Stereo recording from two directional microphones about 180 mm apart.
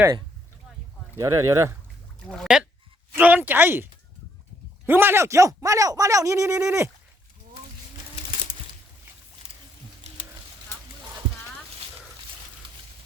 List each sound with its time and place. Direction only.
1.2 s speech: 15° right (ahead or behind)
2.2 s speech: centre (ahead or behind)
4.9 s speech: 10° right (ahead or behind)
10.0 s a sound: 35° right (ahead or behind)